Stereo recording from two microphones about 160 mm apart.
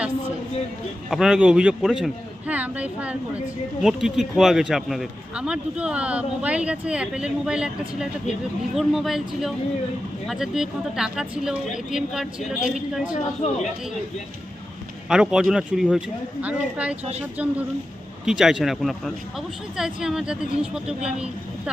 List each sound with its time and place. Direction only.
1.1 s speech: 5° right (ahead or behind)
13.4 s speech: 40° left (ahead or behind)
15.1 s a woman's voice: 5° right (ahead or behind)